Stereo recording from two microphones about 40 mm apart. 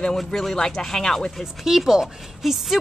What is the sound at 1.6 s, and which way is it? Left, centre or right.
Speech, centre.